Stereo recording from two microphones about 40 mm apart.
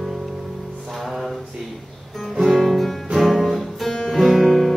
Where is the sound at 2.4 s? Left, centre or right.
Centre.